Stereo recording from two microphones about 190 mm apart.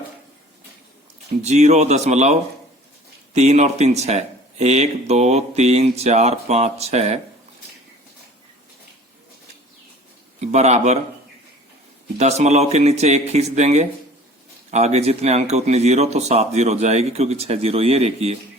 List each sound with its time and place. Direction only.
1.4 s speech: 35° right (ahead or behind)
10.4 s speech: 35° right (ahead or behind)
12.1 s speech: 35° right (ahead or behind)